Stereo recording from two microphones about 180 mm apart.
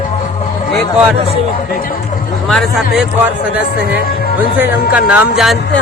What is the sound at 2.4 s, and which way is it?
Music, centre (ahead or behind).